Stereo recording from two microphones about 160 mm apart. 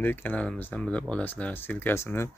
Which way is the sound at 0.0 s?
10° left (ahead or behind).